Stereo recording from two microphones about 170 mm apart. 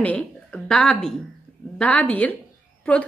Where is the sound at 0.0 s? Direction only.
10° left (ahead or behind).